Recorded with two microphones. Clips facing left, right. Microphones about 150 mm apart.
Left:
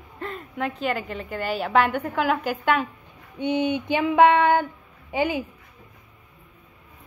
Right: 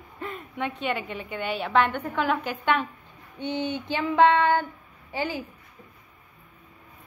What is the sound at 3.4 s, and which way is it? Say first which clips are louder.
Female singing: left 6 dB; 15° left (ahead or behind).